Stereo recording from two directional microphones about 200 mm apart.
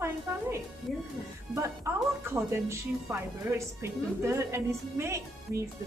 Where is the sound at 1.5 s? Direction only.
15° right (ahead or behind).